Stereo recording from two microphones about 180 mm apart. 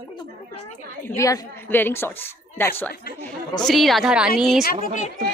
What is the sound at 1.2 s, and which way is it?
A woman's voice, 15° left (ahead or behind).